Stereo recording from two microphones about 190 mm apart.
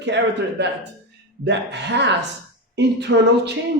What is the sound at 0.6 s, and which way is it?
Speech, 65° right (ahead or behind).